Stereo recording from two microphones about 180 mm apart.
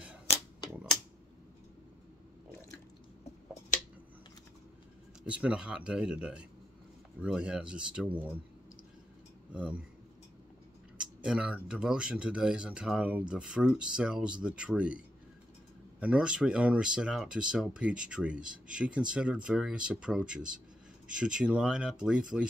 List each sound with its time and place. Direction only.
0.3 s a sound: 35° left (ahead or behind)
5.2 s speech: 5° right (ahead or behind)
9.5 s speech: 5° right (ahead or behind)
11.0 s speech: 5° right (ahead or behind)
16.0 s speech: 5° right (ahead or behind)